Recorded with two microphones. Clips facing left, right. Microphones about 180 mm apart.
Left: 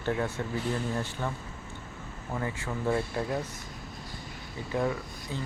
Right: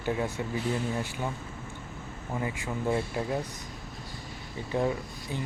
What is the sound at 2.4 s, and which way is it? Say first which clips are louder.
Speech: right 1 dB; 15° right (ahead or behind).